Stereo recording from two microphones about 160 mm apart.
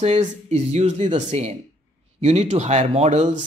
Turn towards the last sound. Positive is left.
turn(degrees=-45)  # may be behind; listen again after turning